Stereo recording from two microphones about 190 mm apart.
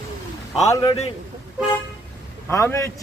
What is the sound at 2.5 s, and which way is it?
Speech, 15° left (ahead or behind).